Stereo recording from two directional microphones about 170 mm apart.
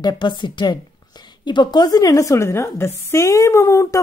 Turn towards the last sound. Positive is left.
turn(degrees=15)  # may be behind; listen again after turning